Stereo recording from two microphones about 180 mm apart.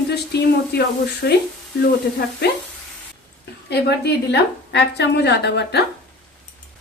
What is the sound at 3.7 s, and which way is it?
A woman's voice, 65° left (ahead or behind).